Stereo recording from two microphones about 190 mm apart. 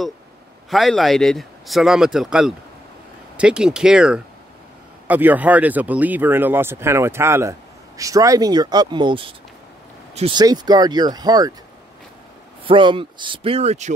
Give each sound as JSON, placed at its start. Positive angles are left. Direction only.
{"t": 0.7, "sound": "speech", "side_deg": 0}
{"t": 12.6, "sound": "speech", "side_deg": -25}